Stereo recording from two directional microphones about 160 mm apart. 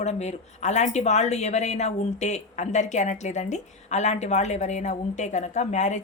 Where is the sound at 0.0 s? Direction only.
45° left (ahead or behind).